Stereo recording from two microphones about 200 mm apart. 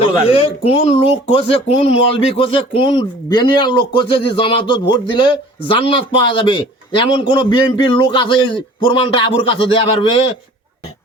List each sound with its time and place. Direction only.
0.3 s a man's voice: 30° left (ahead or behind)